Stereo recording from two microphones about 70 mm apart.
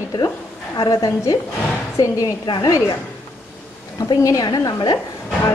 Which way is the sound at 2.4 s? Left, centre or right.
Left.